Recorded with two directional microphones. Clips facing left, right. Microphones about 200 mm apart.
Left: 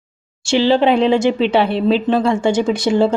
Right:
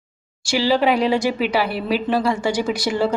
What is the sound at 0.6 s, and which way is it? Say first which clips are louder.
Speech: left 4 dB; 25° left (ahead or behind).